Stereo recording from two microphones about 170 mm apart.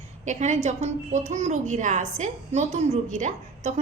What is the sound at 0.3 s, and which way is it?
A woman's voice, 45° right (ahead or behind).